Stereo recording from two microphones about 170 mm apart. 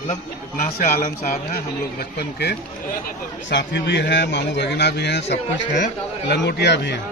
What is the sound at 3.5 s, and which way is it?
A man's voice, 90° left.